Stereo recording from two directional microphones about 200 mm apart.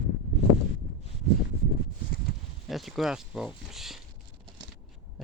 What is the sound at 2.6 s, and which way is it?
Speech, centre (ahead or behind).